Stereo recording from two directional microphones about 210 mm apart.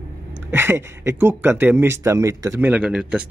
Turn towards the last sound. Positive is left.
turn(degrees=-5)  # may be behind; listen again after turning